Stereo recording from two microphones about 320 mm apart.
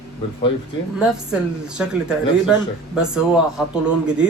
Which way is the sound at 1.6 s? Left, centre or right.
Centre.